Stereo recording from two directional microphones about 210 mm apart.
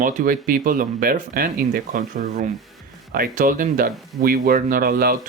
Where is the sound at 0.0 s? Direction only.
40° right (ahead or behind).